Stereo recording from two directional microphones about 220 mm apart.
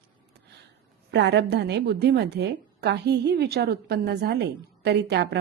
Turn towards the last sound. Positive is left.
turn(degrees=-50)  # may be behind; listen again after turning